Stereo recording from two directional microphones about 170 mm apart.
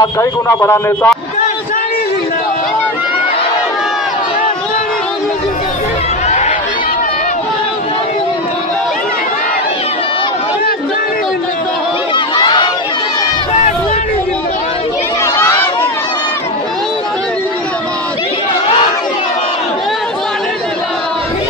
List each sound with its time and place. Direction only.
0.0 s speech: 15° left (ahead or behind)
12.4 s crowd: 25° left (ahead or behind)